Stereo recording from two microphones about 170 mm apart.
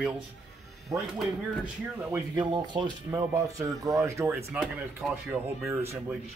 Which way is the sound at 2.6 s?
25° right (ahead or behind).